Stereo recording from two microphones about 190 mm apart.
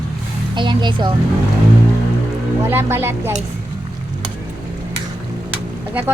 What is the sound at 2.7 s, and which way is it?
Speech, 10° right (ahead or behind).